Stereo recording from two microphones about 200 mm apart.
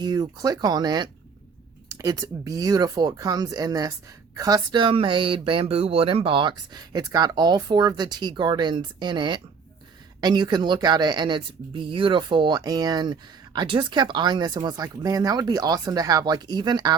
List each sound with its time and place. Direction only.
0.0 s speech: 20° right (ahead or behind)